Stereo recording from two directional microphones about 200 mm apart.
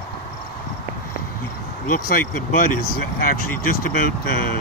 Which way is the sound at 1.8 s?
45° left (ahead or behind).